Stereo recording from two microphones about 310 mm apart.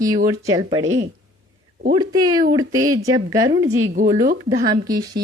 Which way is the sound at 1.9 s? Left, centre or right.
Centre.